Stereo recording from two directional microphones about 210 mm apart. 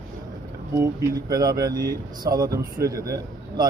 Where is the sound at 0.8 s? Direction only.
15° right (ahead or behind).